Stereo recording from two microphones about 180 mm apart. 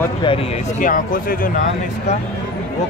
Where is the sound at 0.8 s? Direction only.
50° left (ahead or behind).